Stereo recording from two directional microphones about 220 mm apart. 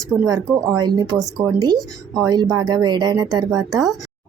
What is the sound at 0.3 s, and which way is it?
Speech, 15° right (ahead or behind).